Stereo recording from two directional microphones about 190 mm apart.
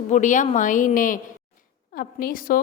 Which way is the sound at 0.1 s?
40° left (ahead or behind).